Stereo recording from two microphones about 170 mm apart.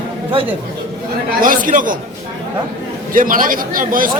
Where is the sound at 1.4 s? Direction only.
55° right (ahead or behind).